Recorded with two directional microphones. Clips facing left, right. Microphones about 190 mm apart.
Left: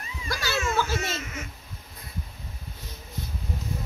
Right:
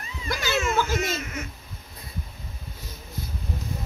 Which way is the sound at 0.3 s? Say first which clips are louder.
Right 3 dB; 20° right (ahead or behind).